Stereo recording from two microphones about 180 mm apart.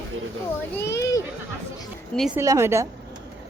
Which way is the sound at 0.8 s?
15° left (ahead or behind).